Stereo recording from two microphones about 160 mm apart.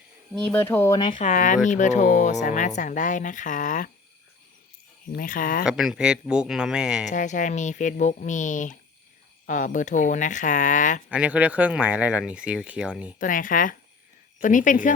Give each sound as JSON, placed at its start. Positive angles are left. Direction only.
{"t": 0.4, "sound": "speech", "side_deg": 10}
{"t": 0.9, "sound": "speech", "side_deg": 30}
{"t": 1.2, "sound": "speech", "side_deg": 50}
{"t": 5.1, "sound": "speech", "side_deg": 60}
{"t": 5.6, "sound": "speech", "side_deg": -5}
{"t": 7.1, "sound": "speech", "side_deg": 50}
{"t": 11.1, "sound": "speech", "side_deg": -10}
{"t": 13.1, "sound": "speech", "side_deg": 55}